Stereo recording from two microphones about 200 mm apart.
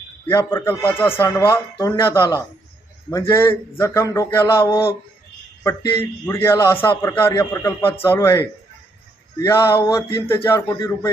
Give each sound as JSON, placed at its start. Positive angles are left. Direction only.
{"t": 0.3, "sound": "speech", "side_deg": 15}